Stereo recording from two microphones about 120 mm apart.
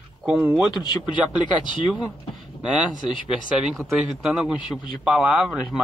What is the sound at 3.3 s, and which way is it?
Speech, 5° right (ahead or behind).